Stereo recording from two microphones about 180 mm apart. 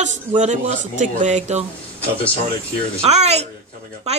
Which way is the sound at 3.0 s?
35° right (ahead or behind).